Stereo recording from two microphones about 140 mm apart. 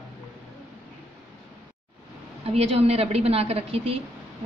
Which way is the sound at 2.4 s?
45° right (ahead or behind).